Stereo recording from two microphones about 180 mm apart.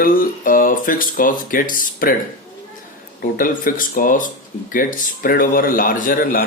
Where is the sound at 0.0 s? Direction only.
50° left (ahead or behind).